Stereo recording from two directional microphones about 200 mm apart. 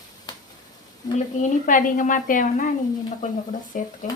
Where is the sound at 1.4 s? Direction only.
40° left (ahead or behind).